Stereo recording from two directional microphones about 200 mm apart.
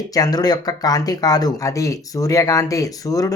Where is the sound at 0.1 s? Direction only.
20° left (ahead or behind).